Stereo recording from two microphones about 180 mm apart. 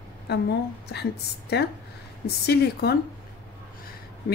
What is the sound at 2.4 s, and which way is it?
Speech, 60° left (ahead or behind).